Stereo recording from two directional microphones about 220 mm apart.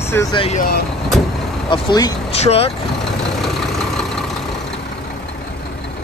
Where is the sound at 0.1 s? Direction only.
15° left (ahead or behind).